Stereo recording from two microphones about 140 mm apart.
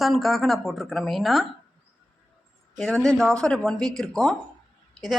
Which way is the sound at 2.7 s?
5° left (ahead or behind).